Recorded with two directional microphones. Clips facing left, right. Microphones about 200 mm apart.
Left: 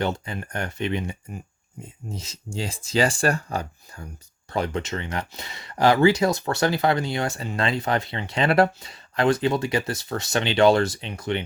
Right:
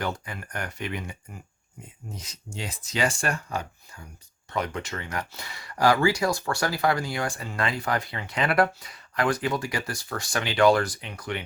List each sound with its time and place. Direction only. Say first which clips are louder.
0.0 s speech: left 5 dB; 25° left (ahead or behind)